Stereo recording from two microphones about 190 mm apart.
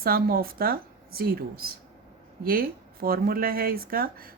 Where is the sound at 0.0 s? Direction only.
50° right (ahead or behind).